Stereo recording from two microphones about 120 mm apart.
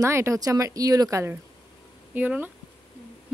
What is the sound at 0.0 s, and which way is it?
Speech, 25° right (ahead or behind).